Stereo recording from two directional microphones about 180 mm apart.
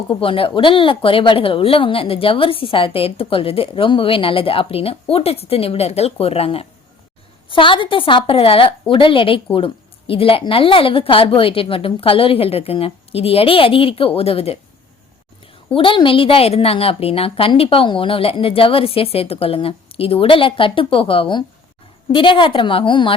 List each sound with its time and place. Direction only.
0.1 s a woman's voice: 30° left (ahead or behind)
15.7 s a woman's voice: 30° left (ahead or behind)